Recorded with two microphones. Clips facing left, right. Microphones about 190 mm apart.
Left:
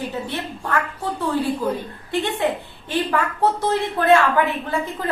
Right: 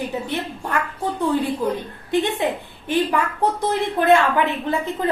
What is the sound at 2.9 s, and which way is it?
Speech, 15° right (ahead or behind).